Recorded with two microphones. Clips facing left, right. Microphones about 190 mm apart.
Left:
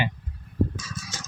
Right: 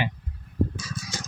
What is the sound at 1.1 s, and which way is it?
Music, 10° right (ahead or behind).